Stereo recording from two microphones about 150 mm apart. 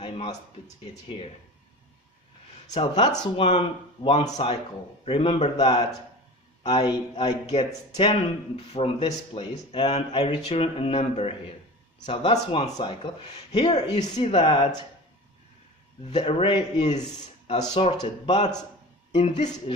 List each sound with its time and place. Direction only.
0.0 s a sound: 35° left (ahead or behind)
1.0 s a man's voice: 35° left (ahead or behind)
2.7 s speech: 30° left (ahead or behind)
3.3 s a man's voice: 40° left (ahead or behind)
13.8 s speech: 25° left (ahead or behind)
14.2 s a man's voice: 40° left (ahead or behind)
16.0 s a man's voice: 40° left (ahead or behind)
19.1 s speech: 50° left (ahead or behind)